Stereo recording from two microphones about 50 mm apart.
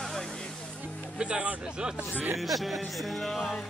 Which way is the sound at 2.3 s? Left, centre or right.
Centre.